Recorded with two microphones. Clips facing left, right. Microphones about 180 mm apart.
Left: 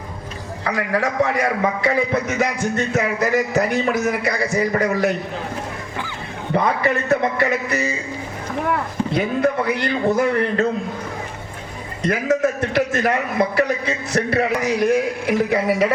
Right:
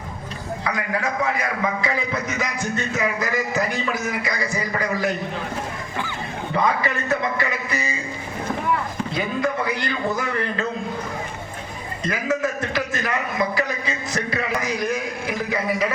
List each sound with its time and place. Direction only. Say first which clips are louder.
0.7 s a man's voice: left 5 dB; 70° left (ahead or behind)
6.5 s a man's voice: left 4 dB; 60° left (ahead or behind)
9.1 s a man's voice: left 5 dB; 60° left (ahead or behind)
12.7 s a man's voice: left 6 dB; 65° left (ahead or behind)